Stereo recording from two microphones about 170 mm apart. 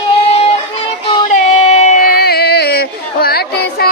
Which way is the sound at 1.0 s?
30° left (ahead or behind).